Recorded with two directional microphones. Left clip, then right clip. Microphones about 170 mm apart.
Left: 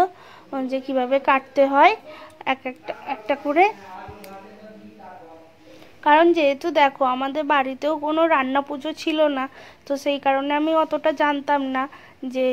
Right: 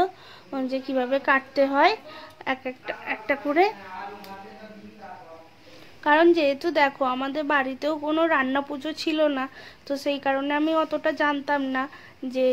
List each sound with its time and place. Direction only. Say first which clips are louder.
0.0 s a woman's voice: left 4 dB; 15° left (ahead or behind)
6.0 s a woman's voice: left 3 dB; 10° left (ahead or behind)